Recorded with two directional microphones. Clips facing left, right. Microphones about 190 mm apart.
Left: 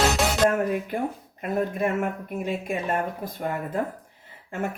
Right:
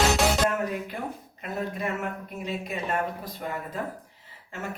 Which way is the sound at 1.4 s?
50° left (ahead or behind).